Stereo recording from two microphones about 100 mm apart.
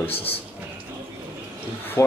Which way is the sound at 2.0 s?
30° left (ahead or behind).